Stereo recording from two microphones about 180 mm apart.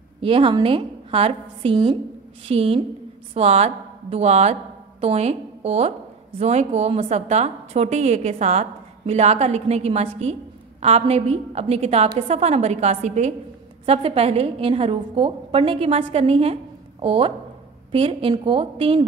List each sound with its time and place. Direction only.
0.2 s a woman's voice: 30° right (ahead or behind)